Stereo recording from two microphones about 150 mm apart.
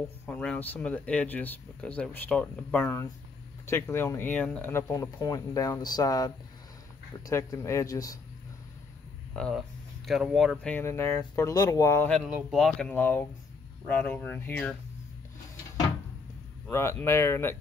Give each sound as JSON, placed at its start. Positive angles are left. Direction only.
{"t": 0.3, "sound": "speech", "side_deg": 5}
{"t": 9.3, "sound": "speech", "side_deg": 0}
{"t": 12.4, "sound": "speech", "side_deg": 0}
{"t": 12.9, "sound": "speech", "side_deg": 15}
{"t": 16.7, "sound": "speech", "side_deg": 15}